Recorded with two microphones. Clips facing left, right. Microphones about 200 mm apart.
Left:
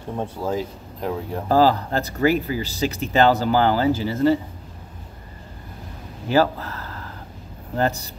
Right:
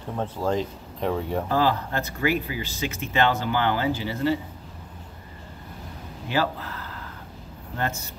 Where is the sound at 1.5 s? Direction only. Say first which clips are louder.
Left 8 dB; 35° left (ahead or behind).